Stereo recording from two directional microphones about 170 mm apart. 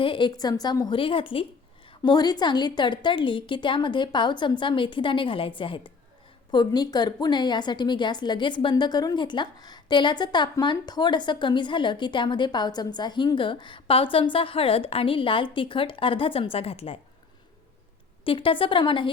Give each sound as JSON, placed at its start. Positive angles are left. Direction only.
{"t": 0.0, "sound": "a woman's voice", "side_deg": 30}
{"t": 18.3, "sound": "a woman's voice", "side_deg": 30}